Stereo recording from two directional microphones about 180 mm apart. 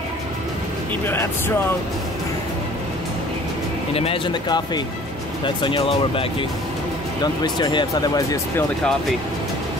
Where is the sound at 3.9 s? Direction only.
35° left (ahead or behind); by 8.6 s 15° left (ahead or behind).